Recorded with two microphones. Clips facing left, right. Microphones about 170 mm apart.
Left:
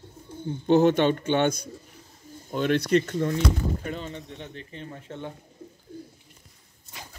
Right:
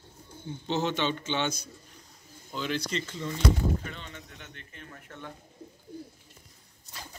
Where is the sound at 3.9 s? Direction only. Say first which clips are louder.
Left 9 dB; 40° left (ahead or behind).